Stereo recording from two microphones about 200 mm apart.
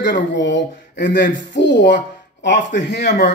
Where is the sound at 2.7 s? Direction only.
45° left (ahead or behind).